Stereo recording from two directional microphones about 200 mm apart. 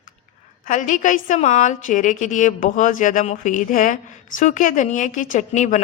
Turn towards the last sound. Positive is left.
turn(degrees=35)  # may be behind; listen again after turning